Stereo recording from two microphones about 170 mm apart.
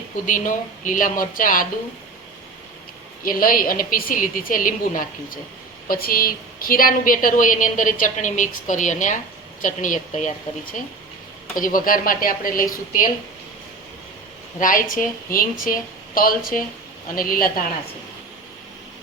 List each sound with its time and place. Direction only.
0.3 s a woman's voice: 50° left (ahead or behind)
3.2 s a woman's voice: 55° left (ahead or behind)
14.6 s a woman's voice: 55° left (ahead or behind)